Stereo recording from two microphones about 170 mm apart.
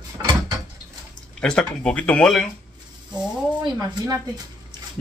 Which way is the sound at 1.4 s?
5° left (ahead or behind).